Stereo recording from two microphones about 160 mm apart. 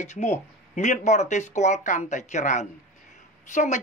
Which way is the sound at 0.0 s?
45° left (ahead or behind).